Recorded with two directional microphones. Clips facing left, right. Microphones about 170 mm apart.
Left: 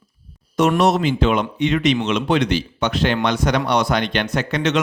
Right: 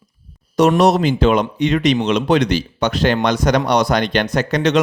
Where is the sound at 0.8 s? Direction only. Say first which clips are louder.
Right 3 dB; 40° right (ahead or behind).